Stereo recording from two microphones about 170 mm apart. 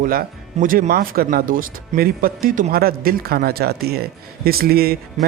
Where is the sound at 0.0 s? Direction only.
55° right (ahead or behind).